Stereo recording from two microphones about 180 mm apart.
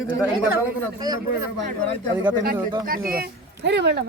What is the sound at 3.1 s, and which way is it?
Speech, 60° right (ahead or behind).